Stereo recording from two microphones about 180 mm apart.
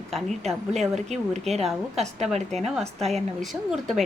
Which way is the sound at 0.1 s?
Centre (ahead or behind).